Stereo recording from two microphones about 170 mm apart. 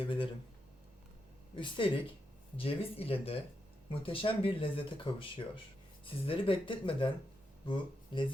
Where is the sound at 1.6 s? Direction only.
30° left (ahead or behind).